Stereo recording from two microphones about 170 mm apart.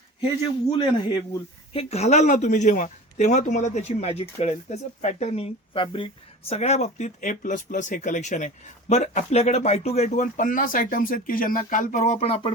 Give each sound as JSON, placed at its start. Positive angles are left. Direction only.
{"t": 0.7, "sound": "a man's voice", "side_deg": 30}